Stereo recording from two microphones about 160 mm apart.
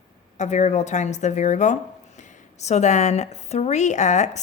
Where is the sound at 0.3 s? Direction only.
45° left (ahead or behind).